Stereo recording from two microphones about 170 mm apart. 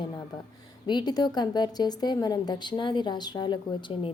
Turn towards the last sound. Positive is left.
turn(degrees=30)  # may be behind; listen again after turning